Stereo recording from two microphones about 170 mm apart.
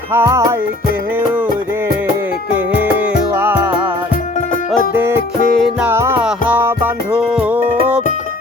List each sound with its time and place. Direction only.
0.1 s music: 15° right (ahead or behind)
3.0 s music: 10° right (ahead or behind)
4.9 s music: 15° right (ahead or behind)